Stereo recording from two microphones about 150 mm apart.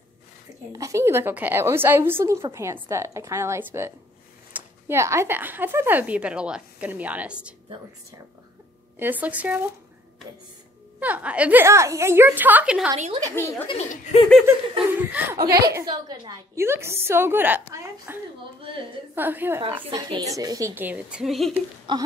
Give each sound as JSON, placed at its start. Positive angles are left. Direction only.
{"t": 0.7, "sound": "a woman's voice", "side_deg": -20}
{"t": 9.0, "sound": "speech", "side_deg": -10}
{"t": 11.0, "sound": "speech", "side_deg": -10}
{"t": 13.3, "sound": "a woman's voice", "side_deg": 15}
{"t": 14.9, "sound": "speech", "side_deg": -10}
{"t": 15.4, "sound": "a woman's voice", "side_deg": -90}
{"t": 15.7, "sound": "a woman's voice", "side_deg": -25}
{"t": 16.6, "sound": "speech", "side_deg": -15}
{"t": 18.6, "sound": "a woman's voice", "side_deg": -35}
{"t": 19.1, "sound": "speech", "side_deg": -15}
{"t": 19.7, "sound": "speech", "side_deg": -25}
{"t": 21.9, "sound": "a woman's voice", "side_deg": -30}